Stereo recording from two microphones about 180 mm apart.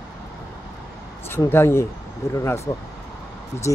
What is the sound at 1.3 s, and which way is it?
Speech, 15° left (ahead or behind).